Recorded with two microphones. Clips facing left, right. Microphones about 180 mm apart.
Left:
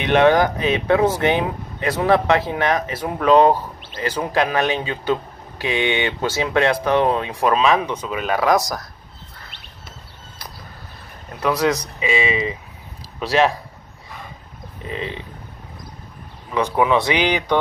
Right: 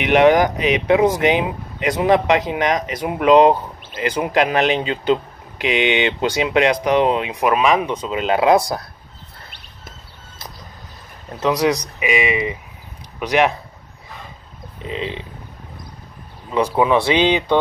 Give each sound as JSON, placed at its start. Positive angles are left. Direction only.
{"t": 0.0, "sound": "speech", "side_deg": -15}
{"t": 11.3, "sound": "speech", "side_deg": -15}
{"t": 14.9, "sound": "speech", "side_deg": -20}
{"t": 16.4, "sound": "speech", "side_deg": -20}